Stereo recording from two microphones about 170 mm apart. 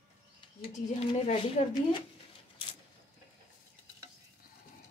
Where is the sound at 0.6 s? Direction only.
35° left (ahead or behind).